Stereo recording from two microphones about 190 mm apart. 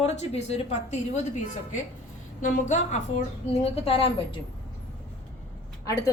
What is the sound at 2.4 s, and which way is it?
A woman's voice, 40° left (ahead or behind).